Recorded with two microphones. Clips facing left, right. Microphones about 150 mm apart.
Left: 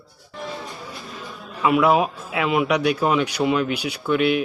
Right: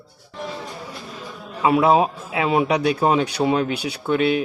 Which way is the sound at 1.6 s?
30° right (ahead or behind).